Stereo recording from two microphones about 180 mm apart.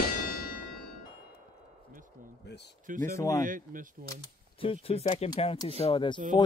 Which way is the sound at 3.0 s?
15° left (ahead or behind).